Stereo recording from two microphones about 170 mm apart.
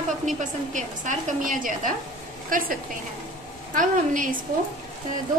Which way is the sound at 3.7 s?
50° right (ahead or behind).